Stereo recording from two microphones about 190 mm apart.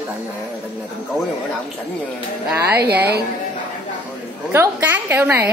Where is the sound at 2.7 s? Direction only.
55° right (ahead or behind).